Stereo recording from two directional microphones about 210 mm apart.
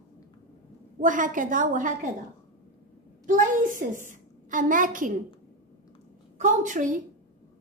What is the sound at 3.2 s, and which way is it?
A woman's voice, 40° right (ahead or behind).